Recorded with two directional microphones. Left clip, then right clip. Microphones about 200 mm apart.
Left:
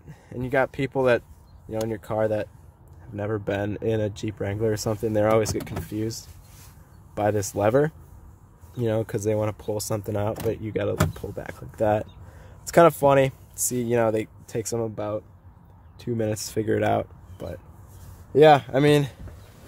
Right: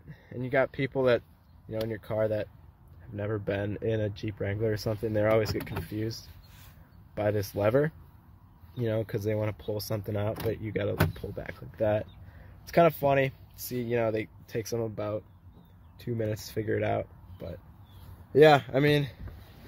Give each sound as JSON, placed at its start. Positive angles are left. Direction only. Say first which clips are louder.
{"t": 0.1, "sound": "speech", "louder": "left 4 dB", "side_deg": 5}
{"t": 7.2, "sound": "speech", "louder": "left 5 dB", "side_deg": 10}
{"t": 12.6, "sound": "speech", "louder": "left 7 dB", "side_deg": 20}
{"t": 18.3, "sound": "speech", "louder": "left 4 dB", "side_deg": 0}